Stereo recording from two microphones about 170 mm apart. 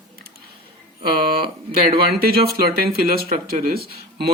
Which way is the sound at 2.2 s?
65° right (ahead or behind).